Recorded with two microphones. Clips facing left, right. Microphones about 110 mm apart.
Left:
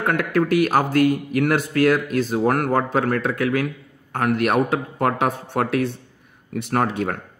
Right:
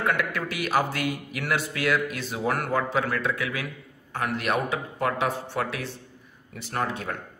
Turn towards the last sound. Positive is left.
turn(degrees=60)  # may be behind; listen again after turning